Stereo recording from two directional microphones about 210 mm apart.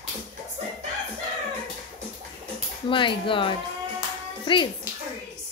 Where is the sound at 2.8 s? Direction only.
25° left (ahead or behind).